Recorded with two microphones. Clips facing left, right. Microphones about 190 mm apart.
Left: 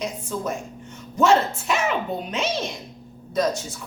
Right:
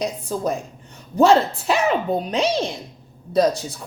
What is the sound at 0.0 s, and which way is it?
A woman's voice, 35° right (ahead or behind).